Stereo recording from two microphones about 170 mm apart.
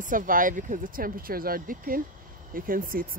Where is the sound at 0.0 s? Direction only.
55° right (ahead or behind).